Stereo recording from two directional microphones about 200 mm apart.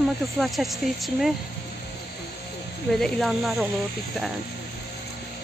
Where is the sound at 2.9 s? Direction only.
Centre (ahead or behind).